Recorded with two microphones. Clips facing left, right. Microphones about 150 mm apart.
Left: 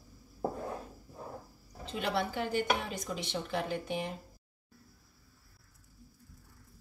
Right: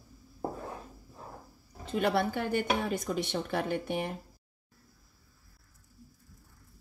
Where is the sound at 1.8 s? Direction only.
50° right (ahead or behind).